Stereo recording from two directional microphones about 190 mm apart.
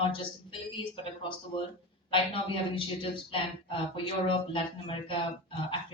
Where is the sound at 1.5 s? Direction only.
25° left (ahead or behind).